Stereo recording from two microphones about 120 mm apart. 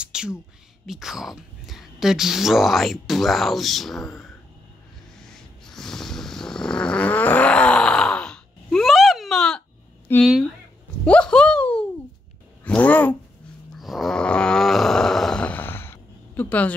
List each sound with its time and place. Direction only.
0.0 s a woman's voice: 5° right (ahead or behind)
5.2 s snort: 5° left (ahead or behind)
10.1 s speech: 15° left (ahead or behind)
11.1 s a sound: 10° left (ahead or behind)
12.6 s speech: 10° left (ahead or behind)
13.7 s a sound: centre (ahead or behind)